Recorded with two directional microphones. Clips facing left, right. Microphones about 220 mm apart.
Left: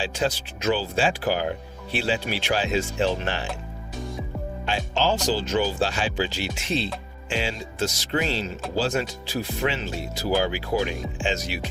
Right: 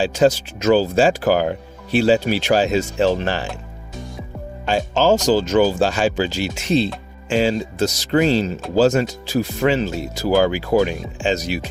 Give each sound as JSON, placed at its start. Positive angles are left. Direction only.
{"t": 0.0, "sound": "speech", "side_deg": -45}
{"t": 4.6, "sound": "speech", "side_deg": -45}